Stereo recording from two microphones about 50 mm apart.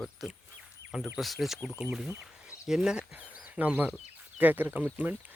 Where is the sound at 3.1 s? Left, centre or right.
Right.